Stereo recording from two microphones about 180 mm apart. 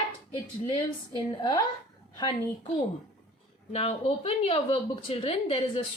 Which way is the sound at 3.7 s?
35° left (ahead or behind).